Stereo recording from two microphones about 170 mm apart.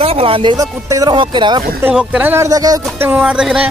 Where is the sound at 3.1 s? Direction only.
5° right (ahead or behind).